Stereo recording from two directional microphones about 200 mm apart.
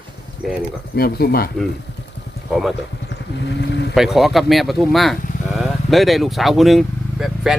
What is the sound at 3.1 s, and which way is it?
Speech, 60° left (ahead or behind).